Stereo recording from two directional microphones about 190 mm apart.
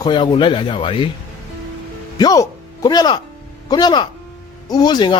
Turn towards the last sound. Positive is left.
turn(degrees=25)  # may be behind; listen again after turning